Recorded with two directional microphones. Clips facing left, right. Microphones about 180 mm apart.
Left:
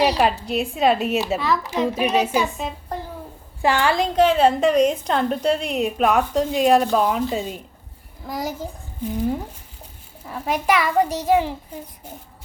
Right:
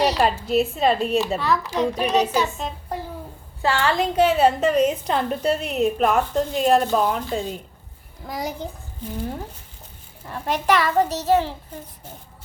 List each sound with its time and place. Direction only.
0.0 s a woman's voice: 5° left (ahead or behind)
3.9 s a woman's voice: 5° right (ahead or behind)
10.2 s a woman's voice: 5° left (ahead or behind)